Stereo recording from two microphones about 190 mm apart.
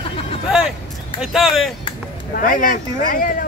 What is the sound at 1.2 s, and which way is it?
Speech, centre (ahead or behind).